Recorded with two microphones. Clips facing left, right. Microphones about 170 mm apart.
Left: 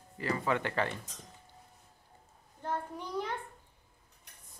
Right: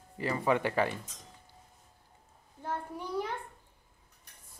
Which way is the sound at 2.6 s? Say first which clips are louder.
Even; 10° right (ahead or behind).